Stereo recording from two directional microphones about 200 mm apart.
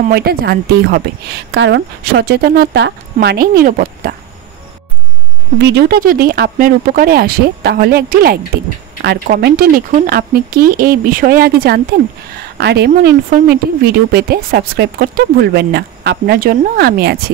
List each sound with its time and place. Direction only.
0.1 s speech: 50° right (ahead or behind)
5.6 s speech: 60° right (ahead or behind)